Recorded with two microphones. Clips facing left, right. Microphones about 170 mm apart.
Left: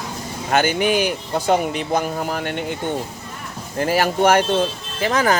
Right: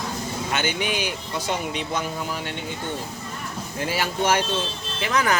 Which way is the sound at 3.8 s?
45° left (ahead or behind).